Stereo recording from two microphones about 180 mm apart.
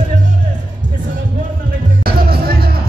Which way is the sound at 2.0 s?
55° right (ahead or behind).